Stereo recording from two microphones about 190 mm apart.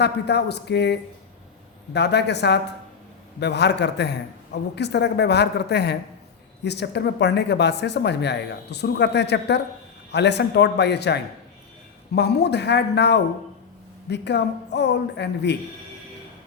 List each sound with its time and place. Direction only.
0.0 s speech: 60° left (ahead or behind)